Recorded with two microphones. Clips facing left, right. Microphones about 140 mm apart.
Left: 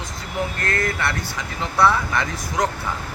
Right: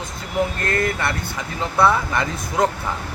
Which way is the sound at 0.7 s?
20° right (ahead or behind).